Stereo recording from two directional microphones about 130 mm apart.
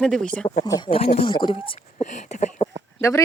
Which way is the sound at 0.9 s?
50° left (ahead or behind).